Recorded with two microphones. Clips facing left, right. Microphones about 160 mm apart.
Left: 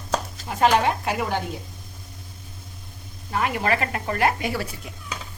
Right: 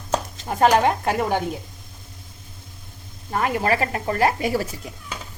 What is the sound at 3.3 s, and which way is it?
Speech, 35° right (ahead or behind).